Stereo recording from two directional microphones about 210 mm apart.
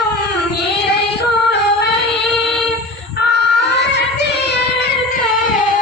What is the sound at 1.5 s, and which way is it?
Female singing, 55° left (ahead or behind).